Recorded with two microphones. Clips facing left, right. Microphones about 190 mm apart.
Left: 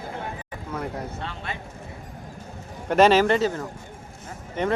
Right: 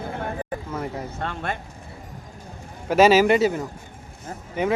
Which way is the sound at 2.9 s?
5° right (ahead or behind).